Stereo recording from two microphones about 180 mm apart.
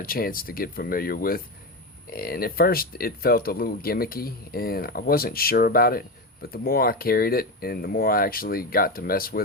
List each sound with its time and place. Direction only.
0.0 s speech: 55° left (ahead or behind)